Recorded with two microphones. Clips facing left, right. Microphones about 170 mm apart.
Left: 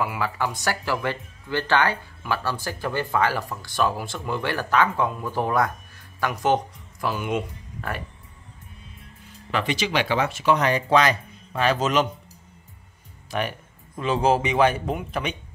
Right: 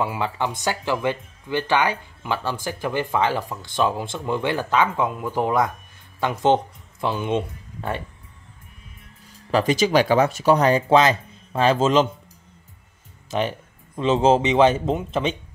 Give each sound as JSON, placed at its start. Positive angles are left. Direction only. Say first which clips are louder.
{"t": 0.0, "sound": "speech", "louder": "right 2 dB", "side_deg": -25}
{"t": 9.5, "sound": "speech", "louder": "right 7 dB", "side_deg": -40}
{"t": 13.3, "sound": "speech", "louder": "right 4 dB", "side_deg": -25}